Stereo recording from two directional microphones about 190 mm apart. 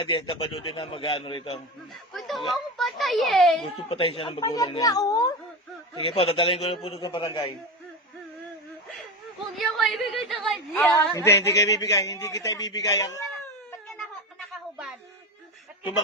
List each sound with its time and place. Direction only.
0.0 s speech: 30° left (ahead or behind)
2.1 s a sound: centre (ahead or behind)
2.7 s a child's voice: centre (ahead or behind)
3.6 s speech: 30° left (ahead or behind)
6.0 s speech: 30° left (ahead or behind)
9.6 s speech: centre (ahead or behind)
10.8 s a man's voice: 10° left (ahead or behind)
13.7 s cat: 5° left (ahead or behind)